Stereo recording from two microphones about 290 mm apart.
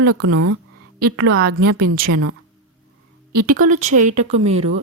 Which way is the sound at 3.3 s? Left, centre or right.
Right.